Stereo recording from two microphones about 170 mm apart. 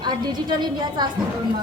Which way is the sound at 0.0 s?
25° right (ahead or behind).